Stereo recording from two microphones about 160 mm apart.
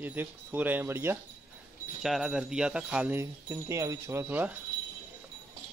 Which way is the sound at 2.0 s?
Centre (ahead or behind).